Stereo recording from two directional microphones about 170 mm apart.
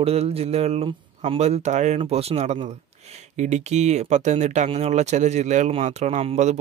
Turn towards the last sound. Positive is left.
turn(degrees=-40)  # may be behind; listen again after turning